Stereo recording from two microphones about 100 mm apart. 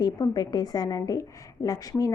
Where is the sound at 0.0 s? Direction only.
40° left (ahead or behind).